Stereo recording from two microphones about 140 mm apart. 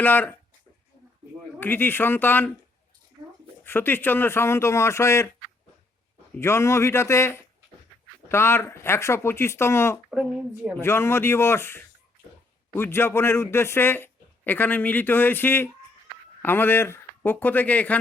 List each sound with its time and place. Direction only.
0.0 s speech: 15° left (ahead or behind)
1.5 s speech: 15° left (ahead or behind)
3.2 s a sound: 30° right (ahead or behind)
3.6 s speech: 15° left (ahead or behind)
6.4 s speech: 20° left (ahead or behind)
10.1 s speech: 5° right (ahead or behind)
10.8 s speech: 20° left (ahead or behind)